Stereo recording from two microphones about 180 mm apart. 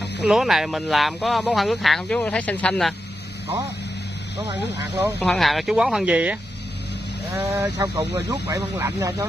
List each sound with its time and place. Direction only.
0.3 s speech: centre (ahead or behind)
5.2 s speech: centre (ahead or behind)
7.3 s speech: 15° right (ahead or behind)